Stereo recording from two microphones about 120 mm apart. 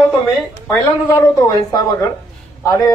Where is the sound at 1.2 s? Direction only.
30° left (ahead or behind).